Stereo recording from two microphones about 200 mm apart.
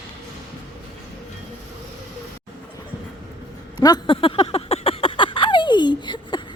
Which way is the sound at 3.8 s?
20° left (ahead or behind).